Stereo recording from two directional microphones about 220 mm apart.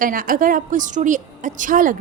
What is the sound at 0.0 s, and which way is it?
A woman's voice, 40° right (ahead or behind).